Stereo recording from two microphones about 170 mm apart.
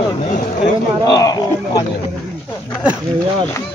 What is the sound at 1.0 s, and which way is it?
Speech, 20° left (ahead or behind).